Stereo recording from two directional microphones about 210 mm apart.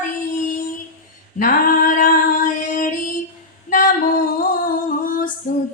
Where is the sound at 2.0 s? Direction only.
40° left (ahead or behind).